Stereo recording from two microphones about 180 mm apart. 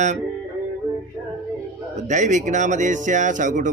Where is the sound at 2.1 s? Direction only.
40° right (ahead or behind).